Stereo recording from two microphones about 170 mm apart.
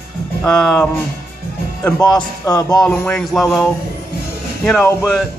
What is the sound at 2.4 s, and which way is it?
Speech, 20° left (ahead or behind).